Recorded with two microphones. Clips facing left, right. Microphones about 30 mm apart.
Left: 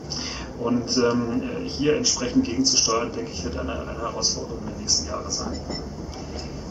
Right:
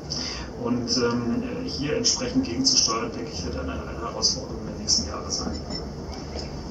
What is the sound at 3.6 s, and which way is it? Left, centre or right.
Speech, centre.